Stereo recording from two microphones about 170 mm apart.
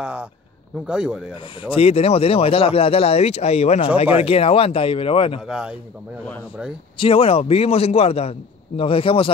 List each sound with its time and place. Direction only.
0.0 s a man's voice: 5° right (ahead or behind)
1.3 s speech: 35° left (ahead or behind)
5.5 s speech: 5° right (ahead or behind)
7.0 s speech: 35° left (ahead or behind)